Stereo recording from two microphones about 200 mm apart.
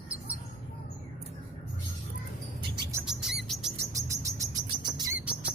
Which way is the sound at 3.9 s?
15° right (ahead or behind).